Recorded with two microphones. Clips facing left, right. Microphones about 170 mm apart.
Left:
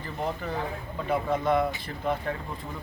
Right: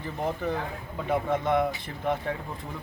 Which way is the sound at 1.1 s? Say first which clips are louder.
Even; 20° right (ahead or behind).